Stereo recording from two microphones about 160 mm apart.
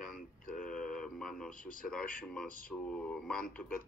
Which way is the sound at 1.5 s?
60° left (ahead or behind).